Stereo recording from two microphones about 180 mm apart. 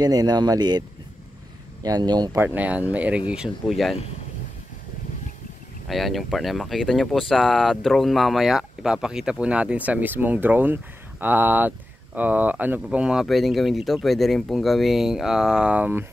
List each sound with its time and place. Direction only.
0.0 s speech: 20° right (ahead or behind)
2.4 s speech: 10° right (ahead or behind)
5.9 s speech: centre (ahead or behind)